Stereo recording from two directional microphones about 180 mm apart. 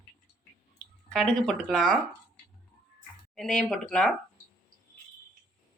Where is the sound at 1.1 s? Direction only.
5° left (ahead or behind).